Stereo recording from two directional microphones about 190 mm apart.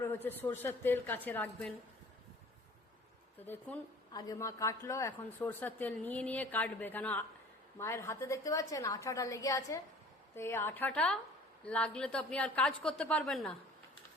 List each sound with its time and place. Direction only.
0.0 s a sound: 10° left (ahead or behind)
0.4 s a woman's voice: 10° left (ahead or behind)
3.4 s a woman's voice: 10° left (ahead or behind)